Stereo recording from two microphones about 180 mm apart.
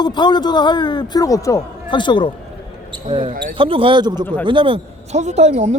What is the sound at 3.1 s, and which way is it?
A man's voice, 25° right (ahead or behind).